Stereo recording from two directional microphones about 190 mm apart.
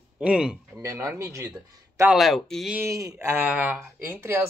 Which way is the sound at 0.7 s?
15° right (ahead or behind).